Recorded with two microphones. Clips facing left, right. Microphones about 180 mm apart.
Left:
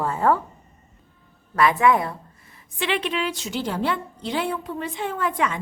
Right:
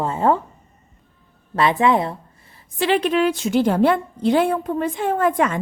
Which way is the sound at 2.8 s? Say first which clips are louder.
Right 7 dB; 40° right (ahead or behind).